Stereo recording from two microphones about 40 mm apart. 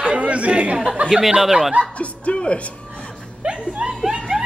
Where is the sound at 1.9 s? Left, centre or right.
Left.